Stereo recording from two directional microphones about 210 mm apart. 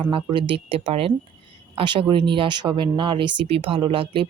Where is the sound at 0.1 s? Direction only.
25° right (ahead or behind).